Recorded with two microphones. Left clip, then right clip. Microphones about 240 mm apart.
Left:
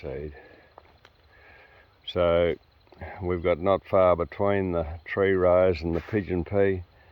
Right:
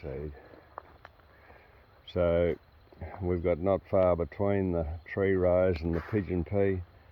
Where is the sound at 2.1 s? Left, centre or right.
Centre.